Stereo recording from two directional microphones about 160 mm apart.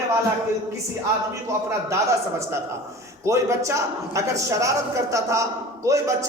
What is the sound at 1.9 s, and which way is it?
A man's voice, 15° right (ahead or behind).